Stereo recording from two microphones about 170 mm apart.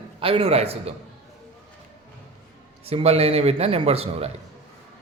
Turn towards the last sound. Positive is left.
turn(degrees=-35)  # may be behind; listen again after turning